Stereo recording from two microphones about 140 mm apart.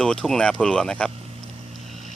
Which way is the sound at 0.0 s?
5° left (ahead or behind).